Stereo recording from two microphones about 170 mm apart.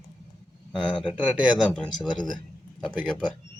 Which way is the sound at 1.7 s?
5° left (ahead or behind).